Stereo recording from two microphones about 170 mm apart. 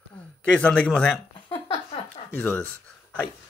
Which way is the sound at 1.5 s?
30° left (ahead or behind).